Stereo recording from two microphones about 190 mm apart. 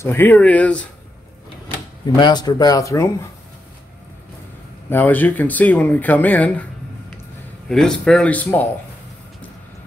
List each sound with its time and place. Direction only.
0.0 s speech: 10° left (ahead or behind)
2.1 s speech: 20° left (ahead or behind)
4.8 s speech: 10° left (ahead or behind)
7.6 s speech: 5° left (ahead or behind)